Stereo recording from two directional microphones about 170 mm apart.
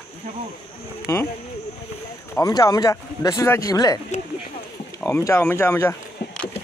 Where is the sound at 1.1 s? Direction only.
15° left (ahead or behind).